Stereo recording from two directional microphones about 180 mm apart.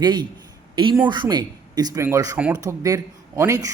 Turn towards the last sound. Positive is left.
turn(degrees=-15)  # may be behind; listen again after turning